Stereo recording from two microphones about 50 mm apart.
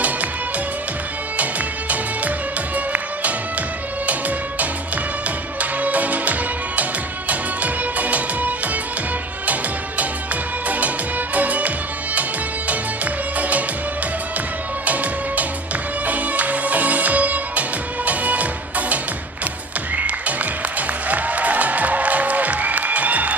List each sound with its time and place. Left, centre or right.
1.4 s music: right
5.5 s music: right
10.7 s music: right
13.4 s music: right
14.8 s music: right
20.0 s music: right